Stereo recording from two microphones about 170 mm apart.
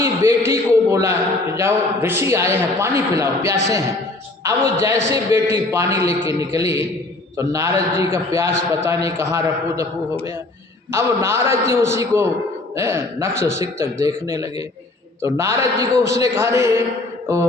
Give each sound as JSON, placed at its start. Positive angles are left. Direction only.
{"t": 0.0, "sound": "a man's voice", "side_deg": -15}
{"t": 10.9, "sound": "a man's voice", "side_deg": -15}